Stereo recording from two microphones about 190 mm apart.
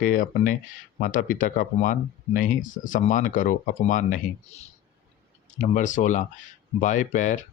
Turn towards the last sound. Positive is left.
turn(degrees=40)  # may be behind; listen again after turning